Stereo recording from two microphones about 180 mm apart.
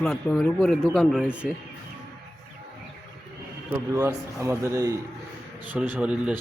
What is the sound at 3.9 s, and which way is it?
Speech, 15° right (ahead or behind).